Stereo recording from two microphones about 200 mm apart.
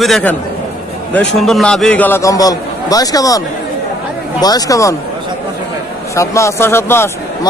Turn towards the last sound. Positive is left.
turn(degrees=10)  # may be behind; listen again after turning